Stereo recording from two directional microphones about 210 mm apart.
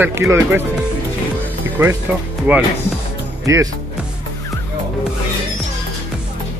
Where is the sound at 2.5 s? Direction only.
10° right (ahead or behind).